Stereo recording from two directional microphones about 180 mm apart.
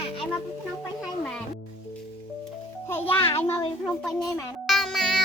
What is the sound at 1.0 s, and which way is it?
Music, 5° left (ahead or behind).